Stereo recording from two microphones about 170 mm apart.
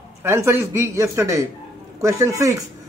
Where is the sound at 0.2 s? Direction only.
15° right (ahead or behind).